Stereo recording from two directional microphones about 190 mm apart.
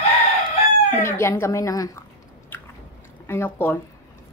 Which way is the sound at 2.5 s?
10° left (ahead or behind).